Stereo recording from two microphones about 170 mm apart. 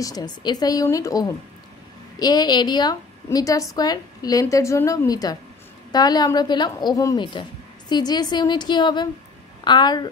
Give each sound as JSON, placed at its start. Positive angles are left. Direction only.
{"t": 0.0, "sound": "a woman's voice", "side_deg": 25}